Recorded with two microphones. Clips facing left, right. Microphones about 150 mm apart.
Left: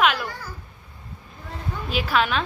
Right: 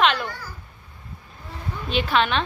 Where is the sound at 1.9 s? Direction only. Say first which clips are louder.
Right 1 dB; 5° left (ahead or behind).